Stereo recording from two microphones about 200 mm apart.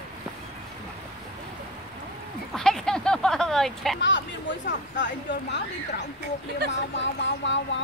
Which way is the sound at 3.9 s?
65° left (ahead or behind).